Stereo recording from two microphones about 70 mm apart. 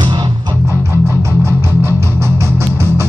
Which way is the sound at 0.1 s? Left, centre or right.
Right.